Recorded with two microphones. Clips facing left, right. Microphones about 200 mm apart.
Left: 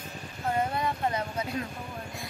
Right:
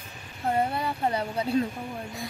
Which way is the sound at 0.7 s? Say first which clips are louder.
Right 2 dB; 30° right (ahead or behind).